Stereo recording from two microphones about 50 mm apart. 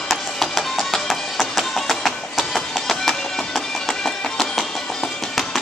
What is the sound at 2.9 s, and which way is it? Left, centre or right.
Music, centre.